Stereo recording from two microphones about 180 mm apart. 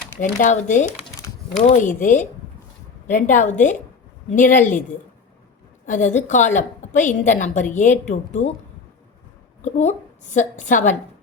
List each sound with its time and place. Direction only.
0.2 s a woman's voice: 45° left (ahead or behind)
5.8 s a woman's voice: 45° left (ahead or behind)
9.6 s a woman's voice: 40° left (ahead or behind)